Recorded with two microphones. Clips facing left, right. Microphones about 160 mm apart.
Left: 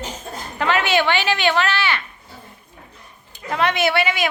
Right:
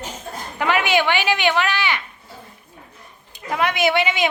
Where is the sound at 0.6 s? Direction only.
15° right (ahead or behind).